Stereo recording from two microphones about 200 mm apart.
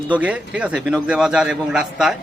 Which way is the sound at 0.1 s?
5° right (ahead or behind).